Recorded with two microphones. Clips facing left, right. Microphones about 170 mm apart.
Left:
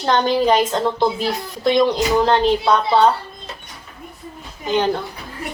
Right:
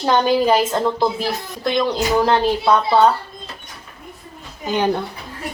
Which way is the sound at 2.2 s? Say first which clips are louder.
Left 1 dB; 5° right (ahead or behind).